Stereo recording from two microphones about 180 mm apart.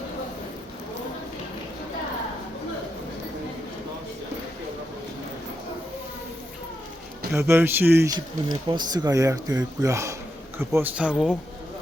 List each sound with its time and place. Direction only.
7.3 s speech: 15° right (ahead or behind)